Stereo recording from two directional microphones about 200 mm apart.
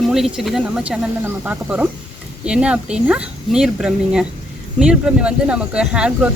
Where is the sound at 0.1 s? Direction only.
Centre (ahead or behind).